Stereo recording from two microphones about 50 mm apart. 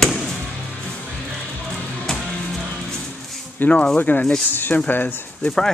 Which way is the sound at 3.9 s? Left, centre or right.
Left.